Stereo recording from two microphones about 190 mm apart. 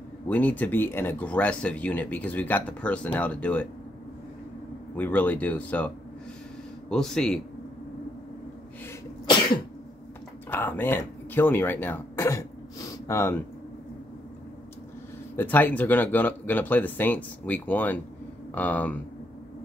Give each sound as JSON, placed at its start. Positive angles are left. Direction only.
{"t": 0.3, "sound": "speech", "side_deg": 10}
{"t": 4.9, "sound": "speech", "side_deg": 10}
{"t": 6.9, "sound": "speech", "side_deg": 5}
{"t": 9.2, "sound": "cough", "side_deg": 20}
{"t": 10.5, "sound": "speech", "side_deg": 10}
{"t": 15.3, "sound": "speech", "side_deg": 10}